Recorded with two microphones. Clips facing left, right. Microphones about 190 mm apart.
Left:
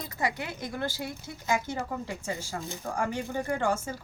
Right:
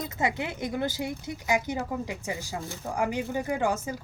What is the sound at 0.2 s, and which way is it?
Speech, 20° right (ahead or behind).